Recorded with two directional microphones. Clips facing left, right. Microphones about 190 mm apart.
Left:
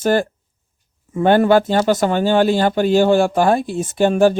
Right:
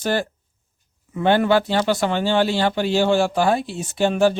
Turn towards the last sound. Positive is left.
turn(degrees=50)  # may be behind; listen again after turning